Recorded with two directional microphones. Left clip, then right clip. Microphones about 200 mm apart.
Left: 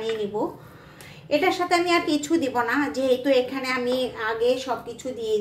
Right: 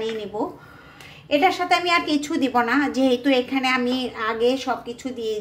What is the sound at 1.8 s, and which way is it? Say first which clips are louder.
A woman's voice: right 2 dB; 50° right (ahead or behind).